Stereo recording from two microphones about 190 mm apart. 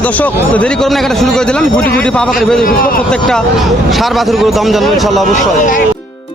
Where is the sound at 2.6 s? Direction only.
50° left (ahead or behind).